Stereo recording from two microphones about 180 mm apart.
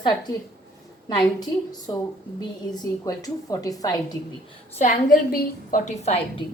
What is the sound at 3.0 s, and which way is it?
A woman's voice, 20° left (ahead or behind).